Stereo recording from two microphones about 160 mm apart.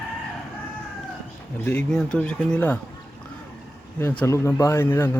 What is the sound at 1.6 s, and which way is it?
Speech, 10° left (ahead or behind).